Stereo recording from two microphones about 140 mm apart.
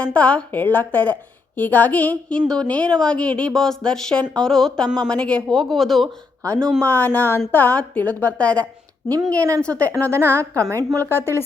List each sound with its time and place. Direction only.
0.0 s a woman's voice: 10° left (ahead or behind)
6.4 s speech: 20° right (ahead or behind)
6.8 s a woman's voice: 15° left (ahead or behind)
9.4 s a woman's voice: 20° right (ahead or behind)
11.1 s a woman's voice: 15° left (ahead or behind)